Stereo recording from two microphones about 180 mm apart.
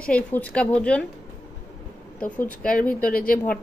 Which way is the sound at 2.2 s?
5° left (ahead or behind).